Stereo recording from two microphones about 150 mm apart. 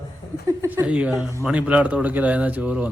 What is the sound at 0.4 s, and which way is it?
Speech, 15° right (ahead or behind).